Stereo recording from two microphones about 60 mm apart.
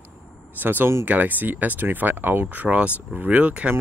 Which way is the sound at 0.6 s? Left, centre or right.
Right.